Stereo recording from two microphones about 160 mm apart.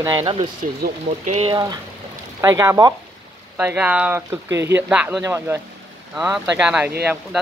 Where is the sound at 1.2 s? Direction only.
40° right (ahead or behind).